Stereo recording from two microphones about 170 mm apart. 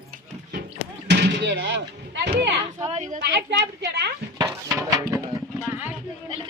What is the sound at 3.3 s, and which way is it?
Speech, 90° right.